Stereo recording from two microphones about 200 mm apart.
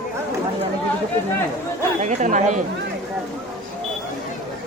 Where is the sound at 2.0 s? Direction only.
40° right (ahead or behind).